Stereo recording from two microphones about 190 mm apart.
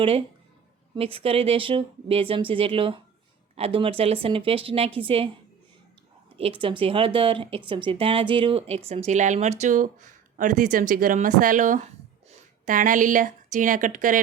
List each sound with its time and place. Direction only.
0.9 s speech: 30° right (ahead or behind)
6.3 s speech: 30° right (ahead or behind)